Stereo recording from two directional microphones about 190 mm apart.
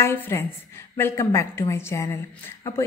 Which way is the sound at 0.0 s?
10° left (ahead or behind).